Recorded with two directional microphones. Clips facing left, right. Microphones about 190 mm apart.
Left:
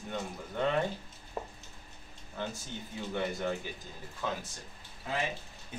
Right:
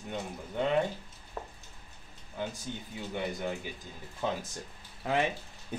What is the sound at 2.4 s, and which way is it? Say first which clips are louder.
Speech: right 2 dB; 15° right (ahead or behind).